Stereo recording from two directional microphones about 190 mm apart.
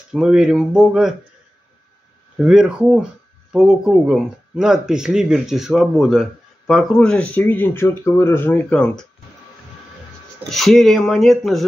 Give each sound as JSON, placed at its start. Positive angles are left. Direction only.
{"t": 0.1, "sound": "speech", "side_deg": -5}
{"t": 2.3, "sound": "speech", "side_deg": -5}
{"t": 10.5, "sound": "speech", "side_deg": 0}